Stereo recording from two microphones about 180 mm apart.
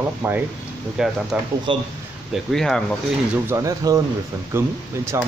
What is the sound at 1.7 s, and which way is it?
Speech, 30° right (ahead or behind).